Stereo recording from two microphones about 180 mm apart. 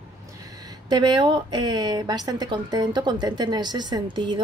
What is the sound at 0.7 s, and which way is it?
A woman's voice, 25° right (ahead or behind).